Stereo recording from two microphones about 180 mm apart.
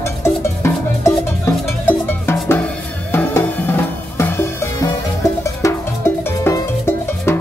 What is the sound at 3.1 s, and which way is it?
Music, 15° left (ahead or behind).